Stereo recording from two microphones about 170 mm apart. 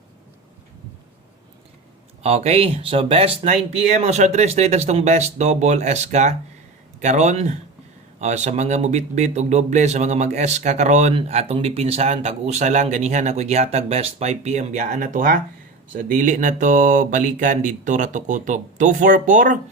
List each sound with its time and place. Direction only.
2.2 s speech: 35° right (ahead or behind)